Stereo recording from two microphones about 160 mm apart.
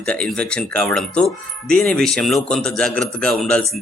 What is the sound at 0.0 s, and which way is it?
Speech, 5° left (ahead or behind).